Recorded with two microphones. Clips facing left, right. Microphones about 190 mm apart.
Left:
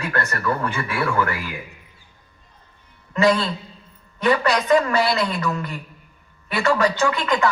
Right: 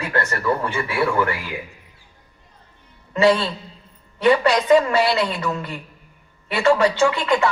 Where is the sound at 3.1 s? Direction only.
30° right (ahead or behind).